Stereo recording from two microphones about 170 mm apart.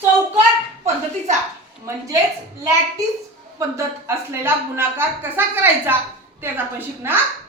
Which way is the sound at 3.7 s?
15° right (ahead or behind).